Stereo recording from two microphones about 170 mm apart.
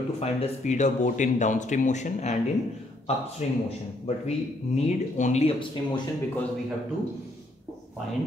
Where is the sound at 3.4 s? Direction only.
40° left (ahead or behind).